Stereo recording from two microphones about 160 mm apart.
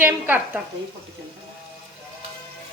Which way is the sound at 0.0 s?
10° right (ahead or behind).